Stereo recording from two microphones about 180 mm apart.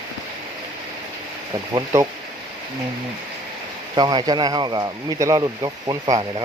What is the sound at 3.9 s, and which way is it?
Speech, 25° right (ahead or behind).